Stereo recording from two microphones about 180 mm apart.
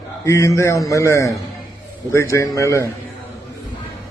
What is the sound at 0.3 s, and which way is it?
A man's voice, 15° left (ahead or behind).